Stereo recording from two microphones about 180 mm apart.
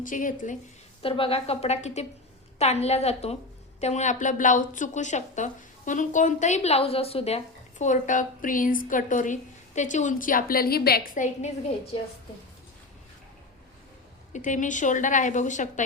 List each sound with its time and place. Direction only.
0.0 s speech: 50° left (ahead or behind)
1.0 s a woman's voice: 30° left (ahead or behind); by 11.5 s 45° left (ahead or behind)
14.3 s speech: 45° left (ahead or behind)